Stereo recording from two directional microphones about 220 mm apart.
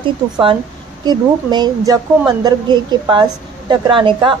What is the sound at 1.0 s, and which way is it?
A woman's voice, 20° right (ahead or behind).